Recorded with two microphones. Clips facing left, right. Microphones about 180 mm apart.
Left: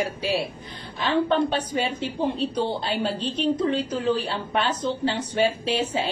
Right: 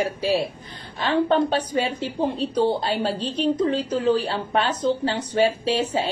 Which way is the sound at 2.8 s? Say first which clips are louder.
Right 2 dB; 40° right (ahead or behind).